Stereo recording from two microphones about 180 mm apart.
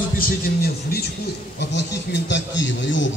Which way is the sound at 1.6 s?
75° left (ahead or behind).